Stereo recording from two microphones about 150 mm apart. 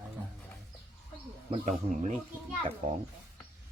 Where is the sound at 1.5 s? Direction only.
50° right (ahead or behind).